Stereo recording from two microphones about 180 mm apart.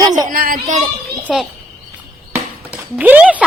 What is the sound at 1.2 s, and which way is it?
Speech, centre (ahead or behind).